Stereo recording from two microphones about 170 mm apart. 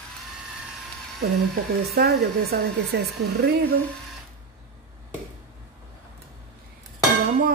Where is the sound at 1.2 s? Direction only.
65° right (ahead or behind).